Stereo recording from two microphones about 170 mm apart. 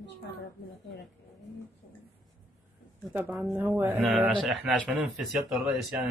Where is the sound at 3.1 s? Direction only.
Centre (ahead or behind).